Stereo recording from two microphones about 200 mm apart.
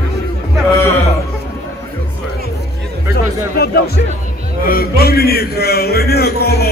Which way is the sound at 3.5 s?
50° left (ahead or behind).